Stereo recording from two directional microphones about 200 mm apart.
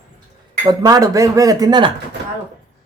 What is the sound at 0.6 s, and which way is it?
Speech, 20° right (ahead or behind).